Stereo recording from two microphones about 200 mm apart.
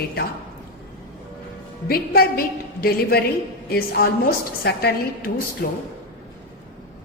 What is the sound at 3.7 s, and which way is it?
A woman's voice, 50° left (ahead or behind).